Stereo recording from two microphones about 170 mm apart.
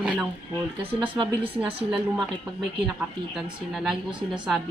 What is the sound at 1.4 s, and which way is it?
Speech, 10° right (ahead or behind).